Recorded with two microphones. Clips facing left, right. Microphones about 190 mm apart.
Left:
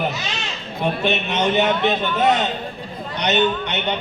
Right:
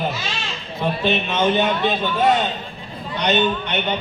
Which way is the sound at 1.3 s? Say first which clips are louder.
Even; 20° left (ahead or behind).